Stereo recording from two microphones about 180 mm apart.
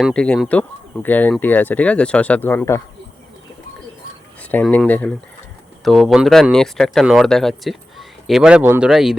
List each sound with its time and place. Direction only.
0.0 s speech: 5° left (ahead or behind)
4.4 s speech: 10° left (ahead or behind)